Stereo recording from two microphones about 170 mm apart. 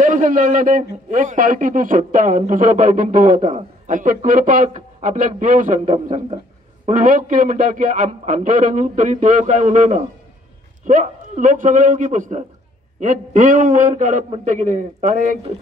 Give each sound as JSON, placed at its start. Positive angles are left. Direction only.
{"t": 0.0, "sound": "a man's voice", "side_deg": -50}